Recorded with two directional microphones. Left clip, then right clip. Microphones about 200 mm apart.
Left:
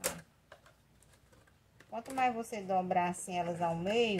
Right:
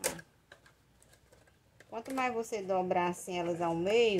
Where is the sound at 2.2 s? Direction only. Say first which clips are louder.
Left 1 dB; 40° right (ahead or behind).